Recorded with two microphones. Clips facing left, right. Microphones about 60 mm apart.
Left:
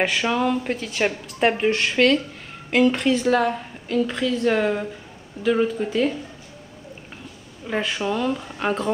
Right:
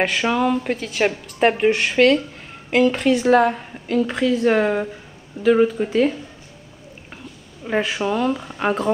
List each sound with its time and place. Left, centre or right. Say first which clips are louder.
0.0 s a woman's voice: right 2 dB; centre
3.3 s speech: right 4 dB; centre
7.6 s speech: right 3 dB; centre